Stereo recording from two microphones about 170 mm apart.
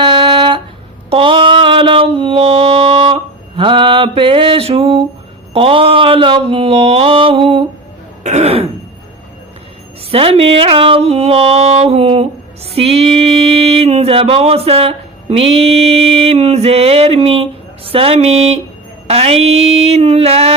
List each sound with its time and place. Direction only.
0.0 s a sound: 30° right (ahead or behind)
5.5 s music: 35° right (ahead or behind)
10.1 s music: 35° right (ahead or behind)